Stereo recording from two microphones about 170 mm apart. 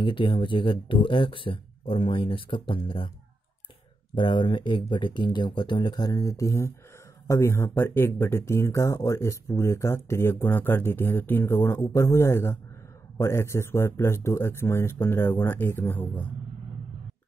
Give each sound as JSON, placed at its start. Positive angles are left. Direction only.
{"t": 0.0, "sound": "speech", "side_deg": 30}
{"t": 4.1, "sound": "speech", "side_deg": 30}